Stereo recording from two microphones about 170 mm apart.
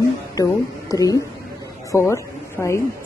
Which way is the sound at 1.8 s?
15° left (ahead or behind).